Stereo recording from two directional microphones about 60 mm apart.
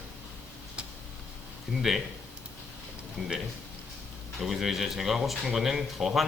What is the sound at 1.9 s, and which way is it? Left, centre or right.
Speech, centre.